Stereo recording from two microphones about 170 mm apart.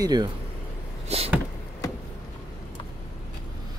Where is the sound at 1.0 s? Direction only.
35° right (ahead or behind).